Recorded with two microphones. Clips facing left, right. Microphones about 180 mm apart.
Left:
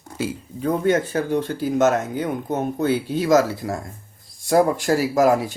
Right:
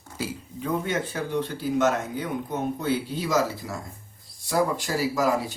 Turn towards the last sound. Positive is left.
turn(degrees=55)  # may be behind; listen again after turning